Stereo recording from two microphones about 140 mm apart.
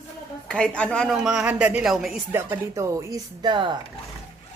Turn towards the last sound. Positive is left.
turn(degrees=-35)  # may be behind; listen again after turning